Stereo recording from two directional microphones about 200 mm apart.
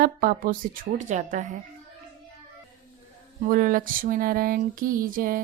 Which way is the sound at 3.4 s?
40° right (ahead or behind).